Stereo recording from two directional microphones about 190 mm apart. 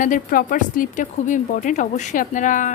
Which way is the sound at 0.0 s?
45° left (ahead or behind).